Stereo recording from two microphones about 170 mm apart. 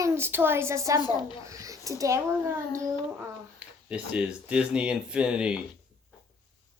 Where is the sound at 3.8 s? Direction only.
5° right (ahead or behind).